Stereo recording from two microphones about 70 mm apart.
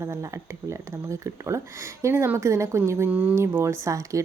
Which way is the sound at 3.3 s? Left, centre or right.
Right.